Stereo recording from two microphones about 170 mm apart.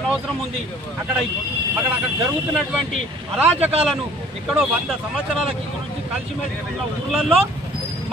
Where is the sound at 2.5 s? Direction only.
5° right (ahead or behind).